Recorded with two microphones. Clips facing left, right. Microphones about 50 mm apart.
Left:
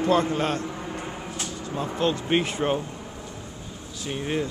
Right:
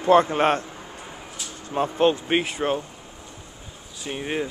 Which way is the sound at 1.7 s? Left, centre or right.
Right.